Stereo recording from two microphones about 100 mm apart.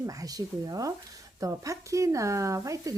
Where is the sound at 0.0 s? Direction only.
35° right (ahead or behind).